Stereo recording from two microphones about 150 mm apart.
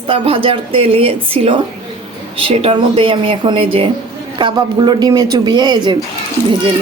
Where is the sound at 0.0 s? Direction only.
35° right (ahead or behind).